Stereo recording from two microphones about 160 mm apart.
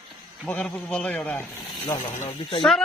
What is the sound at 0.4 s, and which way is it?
A man's voice, 10° left (ahead or behind).